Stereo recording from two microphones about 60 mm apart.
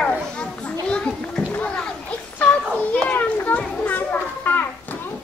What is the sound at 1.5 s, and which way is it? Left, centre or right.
Children playing, left.